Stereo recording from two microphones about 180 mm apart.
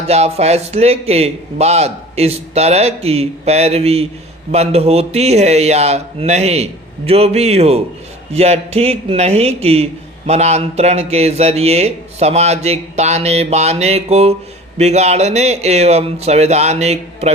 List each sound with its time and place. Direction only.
0.1 s a man's voice: 35° right (ahead or behind)